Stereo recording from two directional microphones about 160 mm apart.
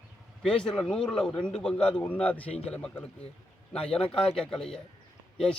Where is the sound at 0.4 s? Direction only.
5° left (ahead or behind).